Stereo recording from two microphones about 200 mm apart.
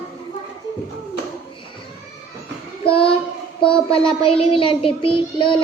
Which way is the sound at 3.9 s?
30° left (ahead or behind).